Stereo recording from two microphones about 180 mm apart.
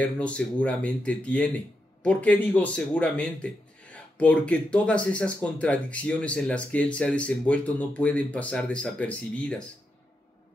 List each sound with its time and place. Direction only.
0.0 s a man's voice: 5° left (ahead or behind)